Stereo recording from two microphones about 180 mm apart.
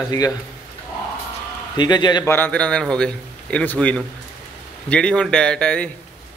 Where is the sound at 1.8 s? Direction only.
25° left (ahead or behind).